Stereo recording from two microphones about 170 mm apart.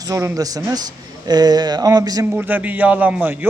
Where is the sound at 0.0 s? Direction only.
20° right (ahead or behind).